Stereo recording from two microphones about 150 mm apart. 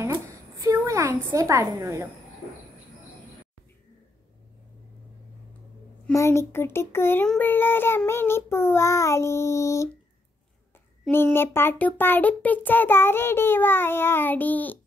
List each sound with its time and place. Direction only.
0.0 s a sound: 20° right (ahead or behind)
6.1 s a child's voice: 20° left (ahead or behind)
11.1 s a child's voice: 15° left (ahead or behind)